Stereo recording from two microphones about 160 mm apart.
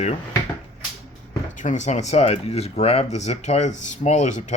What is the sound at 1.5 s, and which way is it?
Speech, 50° left (ahead or behind).